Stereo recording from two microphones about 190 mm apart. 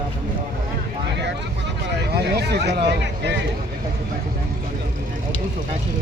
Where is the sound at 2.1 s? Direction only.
60° right (ahead or behind).